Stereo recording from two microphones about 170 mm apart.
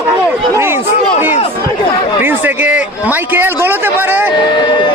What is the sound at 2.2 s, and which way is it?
A man's voice, 10° right (ahead or behind).